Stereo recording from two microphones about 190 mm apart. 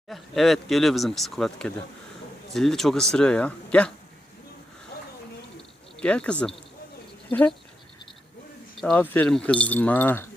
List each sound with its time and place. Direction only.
0.1 s speech: centre (ahead or behind)
6.0 s speech: 5° left (ahead or behind)
8.8 s speech: 5° left (ahead or behind)